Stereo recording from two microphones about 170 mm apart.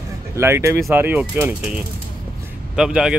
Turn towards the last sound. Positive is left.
turn(degrees=-5)  # may be behind; listen again after turning